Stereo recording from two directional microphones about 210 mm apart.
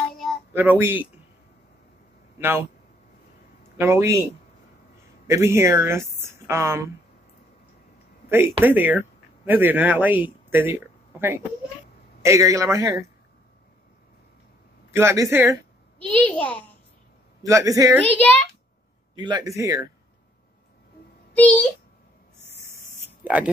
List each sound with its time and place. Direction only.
0.1 s a sound: centre (ahead or behind)
0.5 s speech: 10° right (ahead or behind)
2.3 s speech: 10° right (ahead or behind)
3.7 s speech: 10° right (ahead or behind)
8.3 s speech: 10° right (ahead or behind)
14.9 s speech: 10° right (ahead or behind)
16.1 s a child's voice: 5° left (ahead or behind)
17.4 s speech: 15° right (ahead or behind)
18.0 s a child's voice: 10° left (ahead or behind)
19.1 s speech: 20° right (ahead or behind)
21.3 s a sound: 5° left (ahead or behind)
23.0 s a sound: 5° right (ahead or behind)